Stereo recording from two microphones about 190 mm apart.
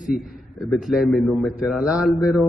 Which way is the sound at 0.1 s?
Centre (ahead or behind).